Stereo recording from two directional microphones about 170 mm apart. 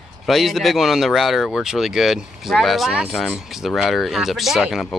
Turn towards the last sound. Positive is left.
turn(degrees=0)  # may be behind; listen again after turning